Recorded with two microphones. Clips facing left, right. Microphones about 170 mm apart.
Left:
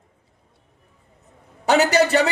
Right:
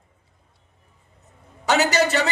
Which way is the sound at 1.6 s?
55° left (ahead or behind).